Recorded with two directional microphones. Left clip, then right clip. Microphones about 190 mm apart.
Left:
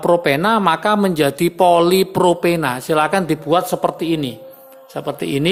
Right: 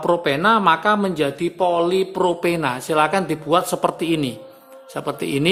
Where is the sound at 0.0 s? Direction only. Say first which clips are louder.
Left 3 dB; 20° left (ahead or behind).